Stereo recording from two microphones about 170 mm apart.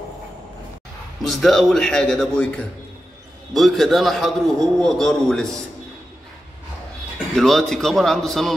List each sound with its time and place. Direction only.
1.2 s a man's voice: centre (ahead or behind)
7.3 s a man's voice: centre (ahead or behind)